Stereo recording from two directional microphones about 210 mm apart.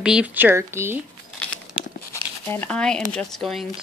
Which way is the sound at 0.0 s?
5° right (ahead or behind).